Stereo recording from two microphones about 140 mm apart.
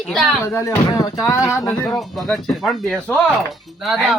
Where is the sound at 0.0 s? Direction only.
Centre (ahead or behind).